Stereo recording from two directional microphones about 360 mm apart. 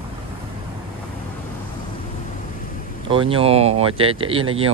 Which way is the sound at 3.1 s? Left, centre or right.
Centre.